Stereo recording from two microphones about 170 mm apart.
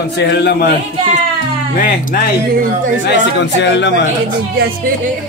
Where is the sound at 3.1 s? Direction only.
90° left.